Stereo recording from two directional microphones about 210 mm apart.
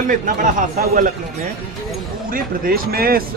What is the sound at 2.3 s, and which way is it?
Speech, 40° right (ahead or behind).